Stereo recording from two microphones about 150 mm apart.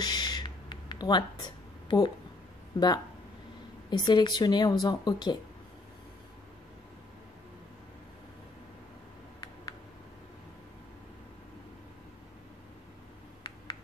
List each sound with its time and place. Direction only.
0.0 s a sound: 30° left (ahead or behind)
2.8 s speech: 30° left (ahead or behind)
4.0 s speech: 30° left (ahead or behind)